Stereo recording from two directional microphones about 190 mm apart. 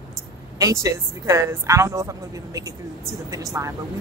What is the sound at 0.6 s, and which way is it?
Speech, 15° right (ahead or behind).